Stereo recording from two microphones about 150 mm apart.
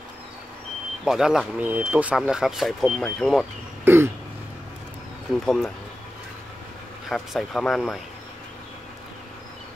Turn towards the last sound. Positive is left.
turn(degrees=0)  # may be behind; listen again after turning